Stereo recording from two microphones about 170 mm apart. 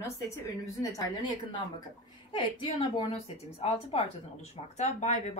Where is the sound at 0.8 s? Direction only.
20° left (ahead or behind).